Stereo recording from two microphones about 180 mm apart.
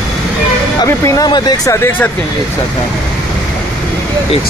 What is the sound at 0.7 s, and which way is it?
Speech, 15° left (ahead or behind).